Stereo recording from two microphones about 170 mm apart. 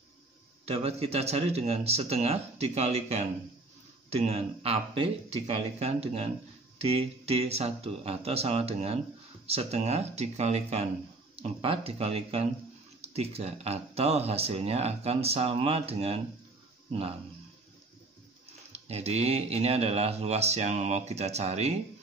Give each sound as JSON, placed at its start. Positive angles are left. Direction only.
{"t": 0.7, "sound": "speech", "side_deg": -35}
{"t": 18.7, "sound": "speech", "side_deg": -40}